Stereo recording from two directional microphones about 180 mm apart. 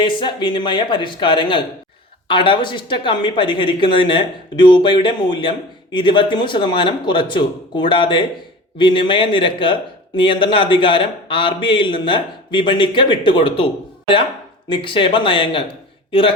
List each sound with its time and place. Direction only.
0.0 s speech: 25° left (ahead or behind)
14.7 s speech: 30° left (ahead or behind)